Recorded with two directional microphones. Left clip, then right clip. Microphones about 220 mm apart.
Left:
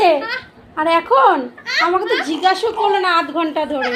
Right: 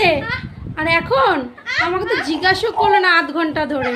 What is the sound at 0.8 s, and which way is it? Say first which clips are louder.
A child's voice: left 3 dB; centre (ahead or behind).